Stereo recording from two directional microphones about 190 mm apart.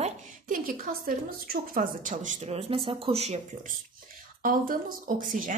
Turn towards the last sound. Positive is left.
turn(degrees=-45)  # may be behind; listen again after turning